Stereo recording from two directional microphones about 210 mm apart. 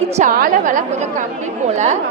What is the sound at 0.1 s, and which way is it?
A woman's voice, 40° right (ahead or behind).